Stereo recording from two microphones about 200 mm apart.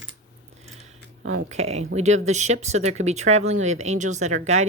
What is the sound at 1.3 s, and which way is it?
Speech, 35° right (ahead or behind).